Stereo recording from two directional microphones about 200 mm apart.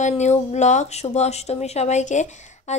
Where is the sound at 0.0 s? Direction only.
35° left (ahead or behind).